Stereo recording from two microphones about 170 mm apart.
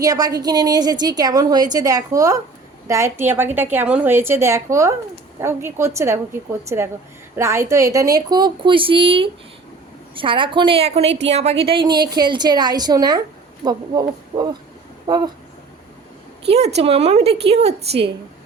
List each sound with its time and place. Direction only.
0.0 s a woman's voice: 20° right (ahead or behind)
16.5 s a woman's voice: 40° right (ahead or behind)